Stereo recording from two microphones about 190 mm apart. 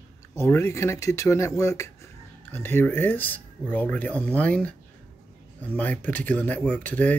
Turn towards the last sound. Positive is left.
turn(degrees=10)  # may be behind; listen again after turning